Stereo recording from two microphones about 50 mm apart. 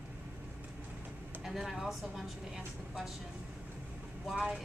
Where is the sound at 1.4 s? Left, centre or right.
Centre.